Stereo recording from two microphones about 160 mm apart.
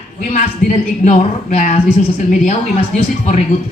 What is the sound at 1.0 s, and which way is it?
Speech, 50° left (ahead or behind).